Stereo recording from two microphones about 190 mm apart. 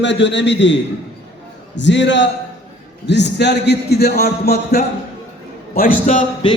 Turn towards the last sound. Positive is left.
turn(degrees=25)  # may be behind; listen again after turning